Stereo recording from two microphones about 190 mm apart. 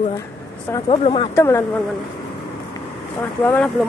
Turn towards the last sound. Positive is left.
turn(degrees=10)  # may be behind; listen again after turning